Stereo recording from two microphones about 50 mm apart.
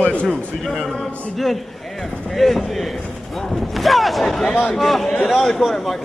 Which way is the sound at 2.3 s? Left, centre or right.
Centre.